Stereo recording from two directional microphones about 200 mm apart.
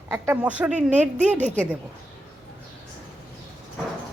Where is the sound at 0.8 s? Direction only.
35° right (ahead or behind).